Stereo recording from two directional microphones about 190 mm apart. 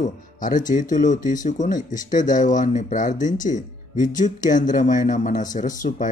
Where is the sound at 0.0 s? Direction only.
40° left (ahead or behind).